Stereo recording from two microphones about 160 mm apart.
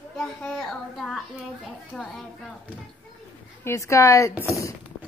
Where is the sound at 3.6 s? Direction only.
15° left (ahead or behind).